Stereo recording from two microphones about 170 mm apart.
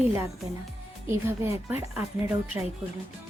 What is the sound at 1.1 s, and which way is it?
Speech, 15° right (ahead or behind).